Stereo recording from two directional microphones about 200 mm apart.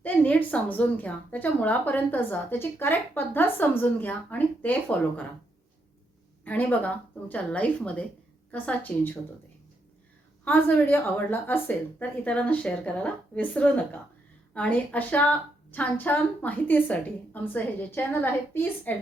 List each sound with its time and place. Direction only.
0.0 s speech: 10° left (ahead or behind)
6.4 s speech: 10° left (ahead or behind)
10.4 s speech: 5° left (ahead or behind)